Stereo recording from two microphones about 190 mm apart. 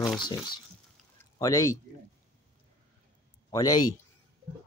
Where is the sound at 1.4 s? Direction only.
15° left (ahead or behind).